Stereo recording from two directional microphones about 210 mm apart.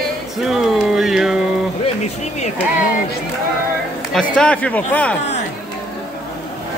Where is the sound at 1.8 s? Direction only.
30° left (ahead or behind).